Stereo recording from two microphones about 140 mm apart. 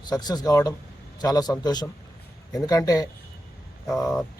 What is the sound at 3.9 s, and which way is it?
Speech, 5° left (ahead or behind).